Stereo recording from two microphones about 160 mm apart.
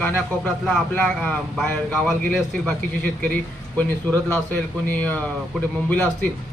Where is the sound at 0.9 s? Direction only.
10° left (ahead or behind).